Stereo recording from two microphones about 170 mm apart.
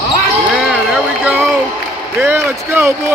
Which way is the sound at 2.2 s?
15° right (ahead or behind).